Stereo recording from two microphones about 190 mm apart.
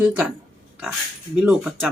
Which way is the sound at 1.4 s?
5° right (ahead or behind).